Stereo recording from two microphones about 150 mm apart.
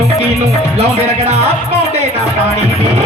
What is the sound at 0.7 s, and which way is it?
Speech, 45° right (ahead or behind).